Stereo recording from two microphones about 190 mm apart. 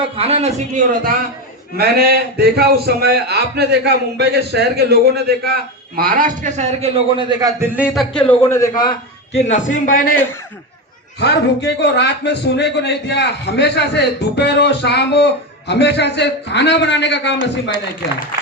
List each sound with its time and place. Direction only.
0.2 s a man's voice: 35° right (ahead or behind)
1.7 s a man's voice: 55° right (ahead or behind); by 7.7 s 20° right (ahead or behind)
7.8 s a man's voice: centre (ahead or behind); by 9.0 s 20° left (ahead or behind)
9.3 s a man's voice: 40° left (ahead or behind)
11.2 s a man's voice: 65° left (ahead or behind)